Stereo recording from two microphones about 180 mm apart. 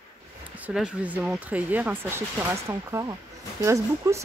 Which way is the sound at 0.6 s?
5° right (ahead or behind).